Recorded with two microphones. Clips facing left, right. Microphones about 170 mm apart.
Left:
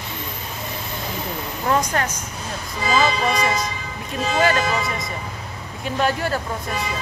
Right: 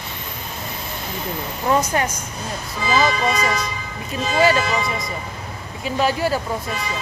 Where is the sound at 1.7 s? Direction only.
10° right (ahead or behind).